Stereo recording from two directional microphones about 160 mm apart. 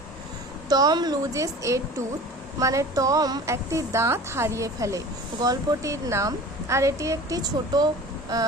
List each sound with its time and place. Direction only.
0.7 s a woman's voice: 25° right (ahead or behind)